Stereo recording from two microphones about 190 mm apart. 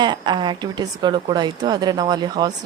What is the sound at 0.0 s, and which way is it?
Speech, 25° right (ahead or behind).